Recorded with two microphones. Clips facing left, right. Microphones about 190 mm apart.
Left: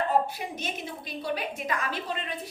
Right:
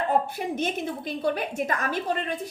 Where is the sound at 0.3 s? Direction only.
50° right (ahead or behind).